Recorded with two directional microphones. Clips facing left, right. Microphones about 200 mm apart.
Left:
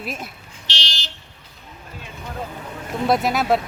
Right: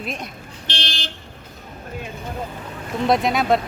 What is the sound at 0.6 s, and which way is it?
Vehicle, 55° right (ahead or behind).